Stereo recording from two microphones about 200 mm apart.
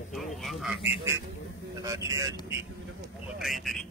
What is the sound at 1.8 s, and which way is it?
Speech, 15° right (ahead or behind).